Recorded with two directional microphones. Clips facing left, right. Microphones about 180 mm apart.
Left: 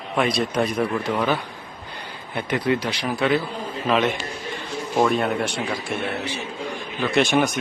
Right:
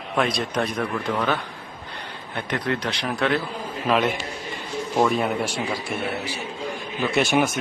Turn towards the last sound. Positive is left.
turn(degrees=-5)  # may be behind; listen again after turning